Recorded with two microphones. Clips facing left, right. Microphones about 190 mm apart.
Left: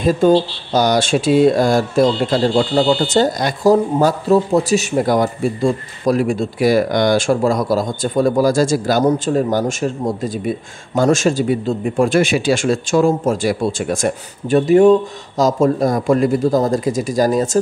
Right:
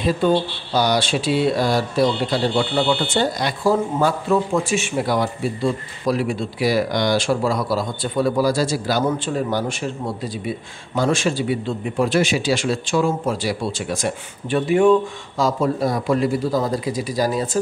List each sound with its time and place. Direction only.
0.2 s speech: 45° left (ahead or behind)